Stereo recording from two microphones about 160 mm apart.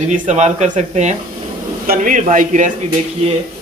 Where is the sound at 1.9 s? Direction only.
55° right (ahead or behind).